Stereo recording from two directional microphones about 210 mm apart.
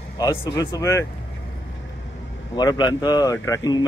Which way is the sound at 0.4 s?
15° left (ahead or behind).